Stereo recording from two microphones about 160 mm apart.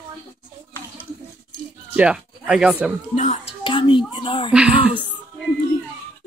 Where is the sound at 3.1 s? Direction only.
45° left (ahead or behind).